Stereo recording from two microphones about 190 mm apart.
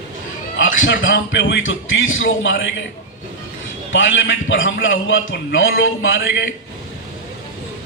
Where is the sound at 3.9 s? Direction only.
75° left (ahead or behind).